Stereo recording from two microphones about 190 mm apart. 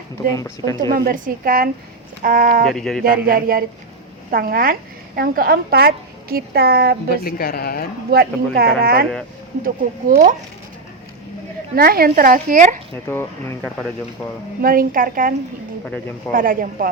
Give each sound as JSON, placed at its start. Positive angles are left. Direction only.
{"t": 0.3, "sound": "speech", "side_deg": 15}
{"t": 0.9, "sound": "a woman's voice", "side_deg": -50}
{"t": 2.6, "sound": "speech", "side_deg": 0}
{"t": 3.0, "sound": "a woman's voice", "side_deg": -50}
{"t": 7.1, "sound": "speech", "side_deg": 50}
{"t": 8.1, "sound": "a woman's voice", "side_deg": -55}
{"t": 10.1, "sound": "speech", "side_deg": -35}
{"t": 11.7, "sound": "a woman's voice", "side_deg": -50}
{"t": 13.1, "sound": "speech", "side_deg": 10}
{"t": 14.6, "sound": "a woman's voice", "side_deg": -50}
{"t": 15.9, "sound": "speech", "side_deg": 10}
{"t": 16.3, "sound": "a woman's voice", "side_deg": -45}